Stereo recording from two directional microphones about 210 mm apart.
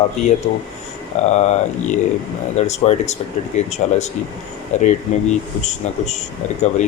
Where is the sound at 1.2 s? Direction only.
30° left (ahead or behind).